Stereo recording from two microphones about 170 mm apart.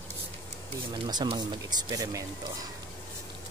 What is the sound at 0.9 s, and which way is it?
Speech, 25° right (ahead or behind).